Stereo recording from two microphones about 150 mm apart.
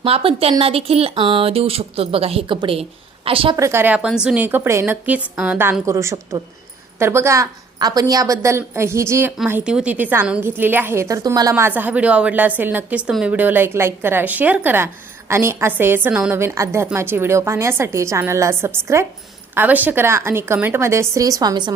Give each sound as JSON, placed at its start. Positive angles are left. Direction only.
{"t": 0.0, "sound": "speech", "side_deg": -40}
{"t": 3.6, "sound": "a woman's voice", "side_deg": -15}